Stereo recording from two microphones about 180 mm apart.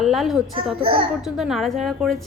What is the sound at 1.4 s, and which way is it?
Speech, centre (ahead or behind).